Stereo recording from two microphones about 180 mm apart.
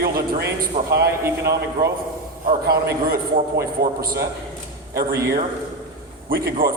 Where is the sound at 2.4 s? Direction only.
55° right (ahead or behind).